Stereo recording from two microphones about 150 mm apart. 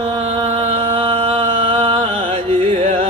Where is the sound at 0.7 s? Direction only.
40° right (ahead or behind).